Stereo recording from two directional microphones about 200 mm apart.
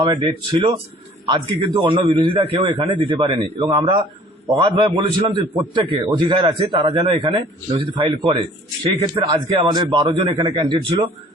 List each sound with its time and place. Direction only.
0.0 s a man's voice: 20° right (ahead or behind)